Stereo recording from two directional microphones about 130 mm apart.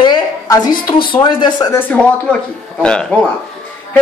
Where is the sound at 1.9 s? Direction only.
10° left (ahead or behind).